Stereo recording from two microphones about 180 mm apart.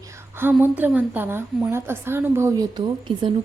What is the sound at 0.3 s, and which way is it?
A woman's voice, 10° right (ahead or behind).